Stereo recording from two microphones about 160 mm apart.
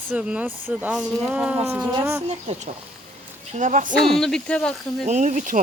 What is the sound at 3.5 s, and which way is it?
Speech, 50° right (ahead or behind).